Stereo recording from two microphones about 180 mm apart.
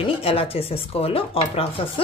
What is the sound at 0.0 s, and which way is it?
Speech, 30° left (ahead or behind).